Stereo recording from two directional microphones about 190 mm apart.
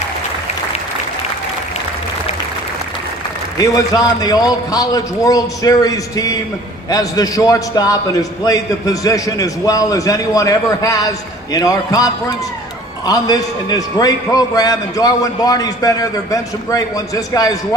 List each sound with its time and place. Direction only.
3.6 s a man's voice: 20° left (ahead or behind)